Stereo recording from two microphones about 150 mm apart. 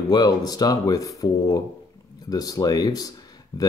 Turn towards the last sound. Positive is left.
turn(degrees=25)  # may be behind; listen again after turning